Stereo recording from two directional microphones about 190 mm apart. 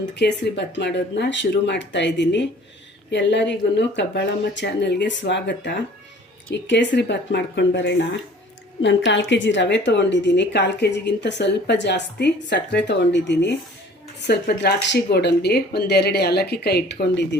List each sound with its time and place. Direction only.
0.2 s a woman's voice: 65° left (ahead or behind)